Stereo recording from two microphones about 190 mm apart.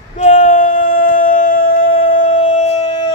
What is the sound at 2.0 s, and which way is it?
Music, 40° left (ahead or behind).